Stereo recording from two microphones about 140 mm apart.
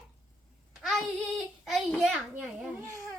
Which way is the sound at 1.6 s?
Centre (ahead or behind).